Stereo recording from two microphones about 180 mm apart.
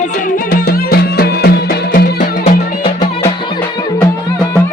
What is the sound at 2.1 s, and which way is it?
Music, 40° left (ahead or behind).